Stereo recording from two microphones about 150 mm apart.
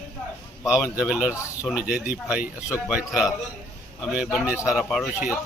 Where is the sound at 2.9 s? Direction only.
10° right (ahead or behind).